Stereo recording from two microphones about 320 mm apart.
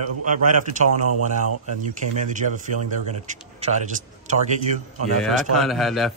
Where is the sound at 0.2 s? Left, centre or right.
Right.